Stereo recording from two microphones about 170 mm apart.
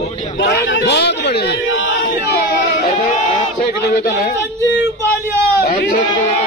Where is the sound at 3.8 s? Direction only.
65° left (ahead or behind).